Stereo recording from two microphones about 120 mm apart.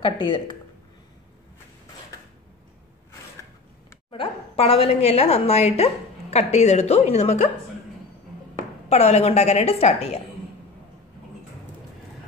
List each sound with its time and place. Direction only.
0.0 s speech: 40° left (ahead or behind)
4.1 s a woman's voice: 50° left (ahead or behind)
8.8 s a woman's voice: 65° left (ahead or behind)